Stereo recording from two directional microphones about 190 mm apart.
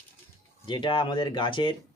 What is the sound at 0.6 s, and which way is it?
Speech, 25° left (ahead or behind).